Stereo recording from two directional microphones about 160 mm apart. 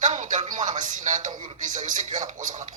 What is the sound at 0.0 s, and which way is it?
A man's voice, 55° right (ahead or behind).